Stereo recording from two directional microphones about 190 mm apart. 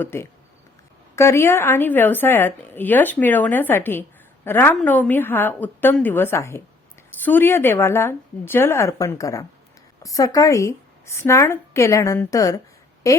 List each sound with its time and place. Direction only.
0.0 s a woman's voice: 10° left (ahead or behind)